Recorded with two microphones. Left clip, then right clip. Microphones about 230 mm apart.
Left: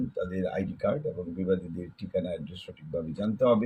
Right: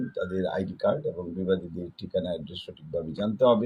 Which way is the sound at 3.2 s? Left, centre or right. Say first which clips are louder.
Right 3 dB; centre.